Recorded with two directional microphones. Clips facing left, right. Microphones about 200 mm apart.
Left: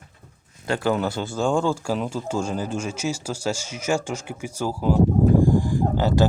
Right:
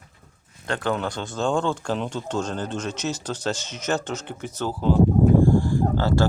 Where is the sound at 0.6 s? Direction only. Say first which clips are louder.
Left 3 dB; 5° left (ahead or behind).